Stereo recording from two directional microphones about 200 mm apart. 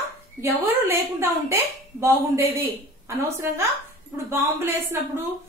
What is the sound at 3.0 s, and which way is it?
A woman's voice, 15° right (ahead or behind).